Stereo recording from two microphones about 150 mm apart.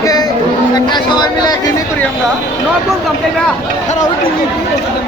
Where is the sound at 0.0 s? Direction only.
25° left (ahead or behind).